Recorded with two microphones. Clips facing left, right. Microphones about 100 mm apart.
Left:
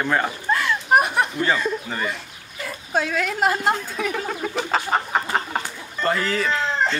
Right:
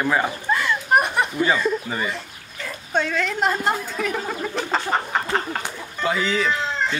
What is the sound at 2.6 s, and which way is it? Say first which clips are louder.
Speech: even; 5° left (ahead or behind).